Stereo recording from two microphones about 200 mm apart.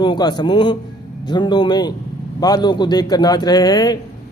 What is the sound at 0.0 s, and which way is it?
Mantra, 20° left (ahead or behind).